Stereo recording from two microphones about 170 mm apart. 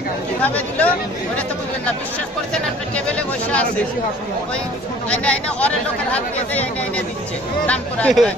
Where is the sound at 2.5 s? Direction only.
5° left (ahead or behind).